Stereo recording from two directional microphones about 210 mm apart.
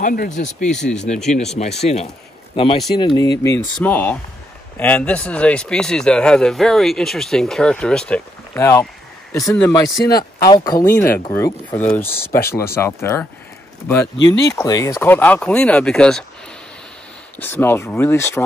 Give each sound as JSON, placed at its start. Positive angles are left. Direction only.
{"t": 0.0, "sound": "speech", "side_deg": 40}
{"t": 3.8, "sound": "a man's voice", "side_deg": 10}
{"t": 17.4, "sound": "speech", "side_deg": 10}